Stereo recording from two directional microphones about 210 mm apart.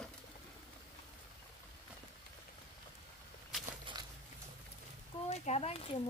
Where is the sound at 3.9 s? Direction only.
25° right (ahead or behind).